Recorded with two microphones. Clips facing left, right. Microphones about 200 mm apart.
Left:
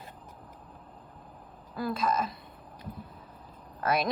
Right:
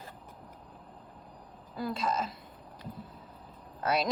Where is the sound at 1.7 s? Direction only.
25° right (ahead or behind).